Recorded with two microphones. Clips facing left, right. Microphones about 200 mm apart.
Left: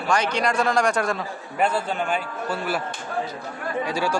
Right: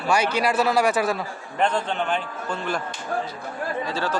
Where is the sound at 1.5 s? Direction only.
5° left (ahead or behind).